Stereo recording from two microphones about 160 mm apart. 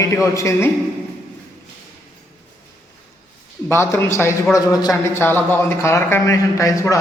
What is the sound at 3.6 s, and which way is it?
A man's voice, 15° left (ahead or behind).